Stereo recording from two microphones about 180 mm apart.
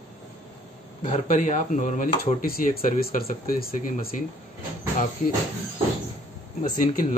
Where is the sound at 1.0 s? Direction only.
45° left (ahead or behind).